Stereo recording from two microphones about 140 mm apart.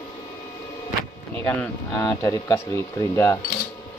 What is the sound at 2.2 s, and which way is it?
Speech, 20° left (ahead or behind).